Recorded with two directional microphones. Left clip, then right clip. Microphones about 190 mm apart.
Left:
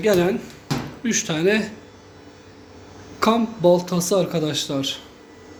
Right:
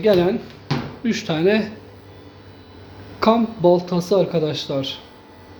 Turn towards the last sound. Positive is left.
turn(degrees=-5)  # may be behind; listen again after turning